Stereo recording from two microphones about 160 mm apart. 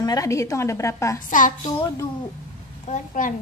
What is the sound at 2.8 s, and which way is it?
Speech, 50° left (ahead or behind).